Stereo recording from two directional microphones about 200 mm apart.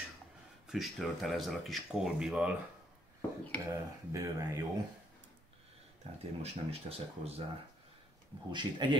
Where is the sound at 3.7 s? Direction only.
15° right (ahead or behind).